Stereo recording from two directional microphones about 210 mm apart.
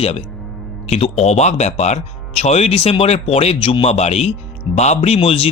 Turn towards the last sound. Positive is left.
turn(degrees=30)  # may be behind; listen again after turning